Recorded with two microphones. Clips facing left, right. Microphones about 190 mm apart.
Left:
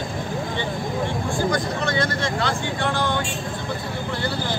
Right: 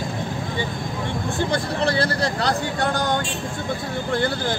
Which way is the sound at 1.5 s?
30° right (ahead or behind).